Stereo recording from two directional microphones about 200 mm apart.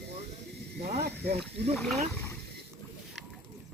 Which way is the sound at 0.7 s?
50° right (ahead or behind).